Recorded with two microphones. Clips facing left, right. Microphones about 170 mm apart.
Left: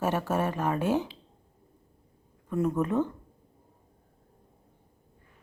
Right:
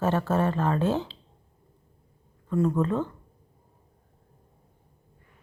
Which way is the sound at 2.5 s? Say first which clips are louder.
Right 2 dB; 20° left (ahead or behind).